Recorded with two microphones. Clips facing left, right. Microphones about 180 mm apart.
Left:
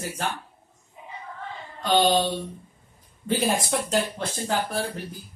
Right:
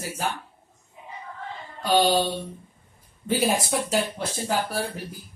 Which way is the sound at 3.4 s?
10° right (ahead or behind).